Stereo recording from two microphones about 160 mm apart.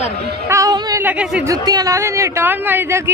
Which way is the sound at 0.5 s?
20° right (ahead or behind).